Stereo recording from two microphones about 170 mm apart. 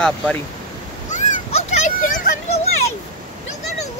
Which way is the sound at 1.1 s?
45° left (ahead or behind).